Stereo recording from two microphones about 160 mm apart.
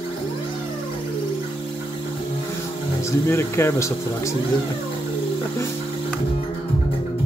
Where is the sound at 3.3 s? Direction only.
15° left (ahead or behind).